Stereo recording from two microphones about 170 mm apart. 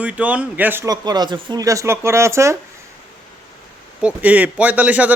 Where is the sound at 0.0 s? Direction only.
10° right (ahead or behind).